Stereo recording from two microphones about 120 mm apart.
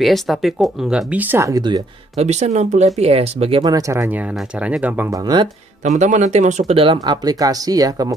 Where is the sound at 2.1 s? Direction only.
65° right (ahead or behind).